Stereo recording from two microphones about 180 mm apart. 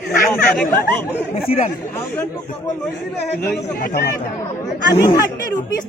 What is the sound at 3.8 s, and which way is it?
Speech, 50° left (ahead or behind).